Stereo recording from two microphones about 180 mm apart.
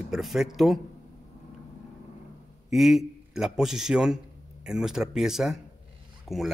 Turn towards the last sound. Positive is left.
turn(degrees=0)  # may be behind; listen again after turning